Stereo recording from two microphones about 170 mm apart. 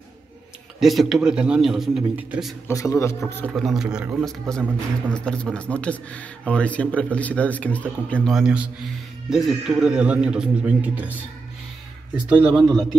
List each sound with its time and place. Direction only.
0.7 s a man's voice: centre (ahead or behind)
2.7 s a man's voice: 20° left (ahead or behind)
3.5 s a man's voice: centre (ahead or behind)
12.4 s a man's voice: centre (ahead or behind)